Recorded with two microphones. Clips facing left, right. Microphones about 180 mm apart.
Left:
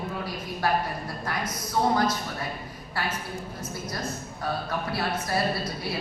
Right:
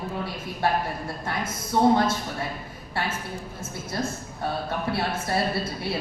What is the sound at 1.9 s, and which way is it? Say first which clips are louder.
Speech: right 2 dB; 25° right (ahead or behind).